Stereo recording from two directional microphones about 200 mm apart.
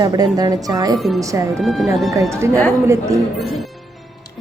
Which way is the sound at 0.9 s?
Centre (ahead or behind).